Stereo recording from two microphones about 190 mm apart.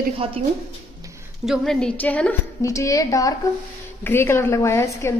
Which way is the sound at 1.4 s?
Centre (ahead or behind).